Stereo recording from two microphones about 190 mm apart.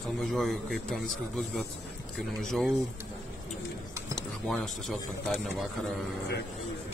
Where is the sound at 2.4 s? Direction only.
Centre (ahead or behind).